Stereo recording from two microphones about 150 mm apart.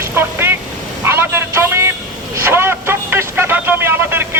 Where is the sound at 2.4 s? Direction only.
15° right (ahead or behind).